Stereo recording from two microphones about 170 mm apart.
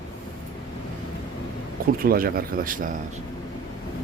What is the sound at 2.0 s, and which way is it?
Speech, 60° right (ahead or behind).